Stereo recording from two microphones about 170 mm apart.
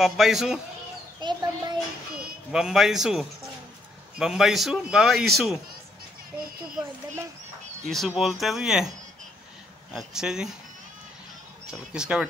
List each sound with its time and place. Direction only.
0.0 s a man's voice: centre (ahead or behind)
1.2 s a child's voice: 25° right (ahead or behind)
2.1 s a man's voice: 5° right (ahead or behind)
7.8 s a man's voice: centre (ahead or behind)
9.9 s a man's voice: 5° right (ahead or behind)
11.6 s a man's voice: 5° right (ahead or behind)